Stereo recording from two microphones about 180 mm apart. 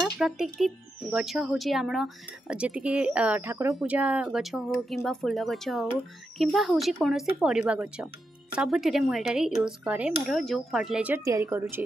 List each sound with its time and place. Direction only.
0.2 s speech: centre (ahead or behind)
11.2 s a woman's voice: 15° right (ahead or behind)